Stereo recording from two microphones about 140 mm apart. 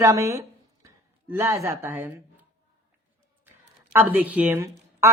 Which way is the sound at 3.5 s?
15° right (ahead or behind).